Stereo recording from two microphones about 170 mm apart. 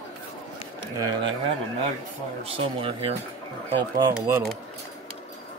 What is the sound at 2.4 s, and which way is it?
Speech, 35° right (ahead or behind).